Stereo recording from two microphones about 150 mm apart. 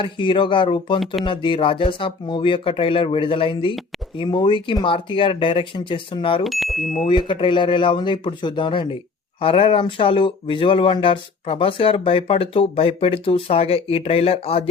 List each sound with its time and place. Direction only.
0.0 s speech: 35° left (ahead or behind)
0.9 s speech: centre (ahead or behind)
1.2 s speech: 35° left (ahead or behind)
6.4 s speech: centre (ahead or behind)
7.1 s speech: 30° left (ahead or behind)